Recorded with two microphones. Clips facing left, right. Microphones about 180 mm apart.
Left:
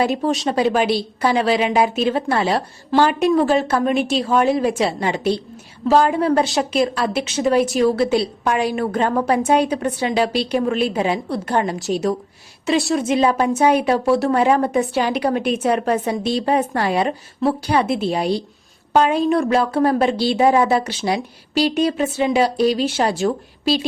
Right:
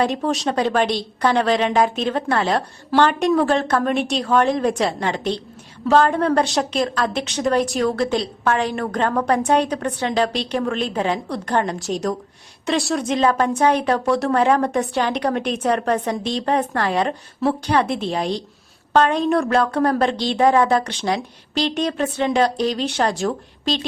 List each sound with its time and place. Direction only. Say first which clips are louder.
0.0 s a woman's voice: left 1 dB; 5° left (ahead or behind)